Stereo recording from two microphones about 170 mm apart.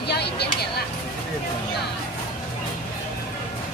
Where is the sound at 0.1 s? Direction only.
75° left (ahead or behind).